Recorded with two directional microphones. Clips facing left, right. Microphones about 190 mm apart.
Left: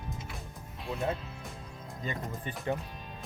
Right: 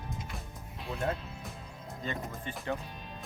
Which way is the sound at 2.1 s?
15° left (ahead or behind).